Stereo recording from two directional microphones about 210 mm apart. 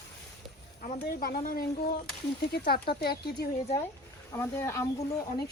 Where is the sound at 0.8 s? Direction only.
40° left (ahead or behind).